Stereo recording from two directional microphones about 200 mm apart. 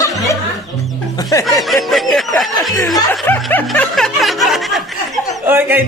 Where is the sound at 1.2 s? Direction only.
15° left (ahead or behind).